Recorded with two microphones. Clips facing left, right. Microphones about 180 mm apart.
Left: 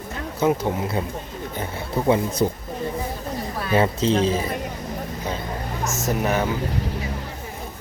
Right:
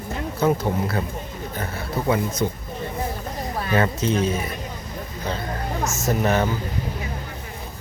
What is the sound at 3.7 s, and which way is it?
Speech, 30° left (ahead or behind).